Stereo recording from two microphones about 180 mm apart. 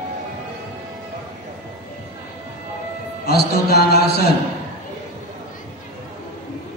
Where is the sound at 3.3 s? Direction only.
60° left (ahead or behind).